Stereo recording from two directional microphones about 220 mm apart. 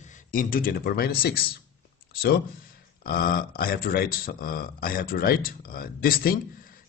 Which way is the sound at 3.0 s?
40° left (ahead or behind).